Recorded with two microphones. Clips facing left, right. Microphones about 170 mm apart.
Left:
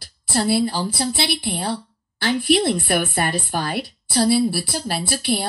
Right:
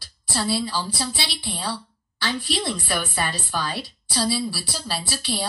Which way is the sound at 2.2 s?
55° left (ahead or behind).